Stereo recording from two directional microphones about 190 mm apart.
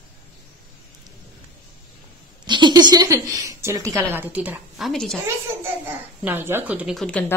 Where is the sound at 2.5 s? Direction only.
25° right (ahead or behind); by 5.2 s centre (ahead or behind).